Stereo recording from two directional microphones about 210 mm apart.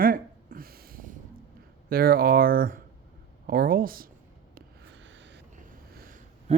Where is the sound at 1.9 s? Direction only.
45° right (ahead or behind).